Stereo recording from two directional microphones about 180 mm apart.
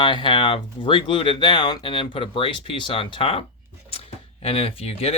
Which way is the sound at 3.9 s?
30° left (ahead or behind).